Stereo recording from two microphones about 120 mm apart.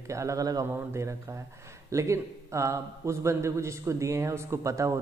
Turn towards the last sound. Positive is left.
turn(degrees=-25)  # may be behind; listen again after turning